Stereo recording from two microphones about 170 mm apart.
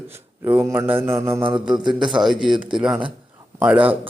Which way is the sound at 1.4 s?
30° right (ahead or behind).